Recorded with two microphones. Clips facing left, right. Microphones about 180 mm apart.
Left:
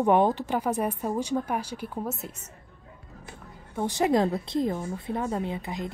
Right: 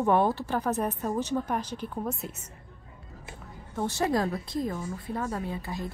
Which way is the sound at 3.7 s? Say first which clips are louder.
Left 3 dB; 15° left (ahead or behind).